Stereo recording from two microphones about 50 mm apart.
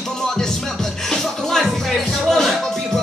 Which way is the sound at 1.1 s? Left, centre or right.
Centre.